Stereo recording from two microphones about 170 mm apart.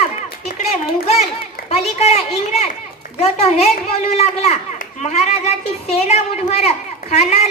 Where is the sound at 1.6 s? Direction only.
40° left (ahead or behind).